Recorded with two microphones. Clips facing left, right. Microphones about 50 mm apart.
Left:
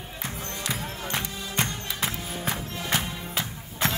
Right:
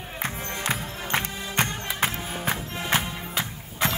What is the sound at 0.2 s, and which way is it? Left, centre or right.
Music, right.